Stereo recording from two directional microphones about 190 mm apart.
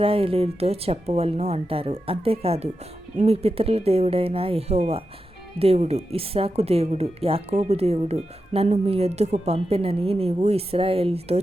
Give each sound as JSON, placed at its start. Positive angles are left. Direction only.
{"t": 0.0, "sound": "speech", "side_deg": -30}